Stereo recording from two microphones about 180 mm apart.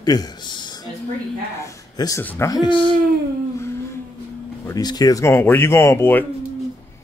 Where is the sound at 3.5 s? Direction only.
15° left (ahead or behind).